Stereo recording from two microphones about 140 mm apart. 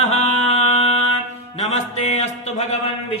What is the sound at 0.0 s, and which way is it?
Mantra, 55° left (ahead or behind).